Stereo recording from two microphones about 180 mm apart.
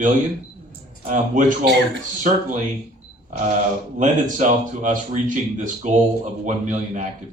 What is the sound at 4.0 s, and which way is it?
Speech, 45° right (ahead or behind).